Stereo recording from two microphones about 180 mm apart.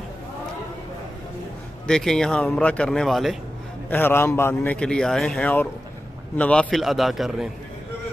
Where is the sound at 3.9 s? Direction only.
10° left (ahead or behind).